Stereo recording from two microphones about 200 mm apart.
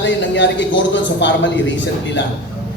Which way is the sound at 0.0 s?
65° left (ahead or behind).